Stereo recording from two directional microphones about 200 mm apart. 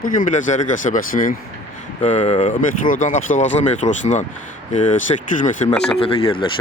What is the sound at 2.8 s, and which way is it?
Speech, 40° left (ahead or behind).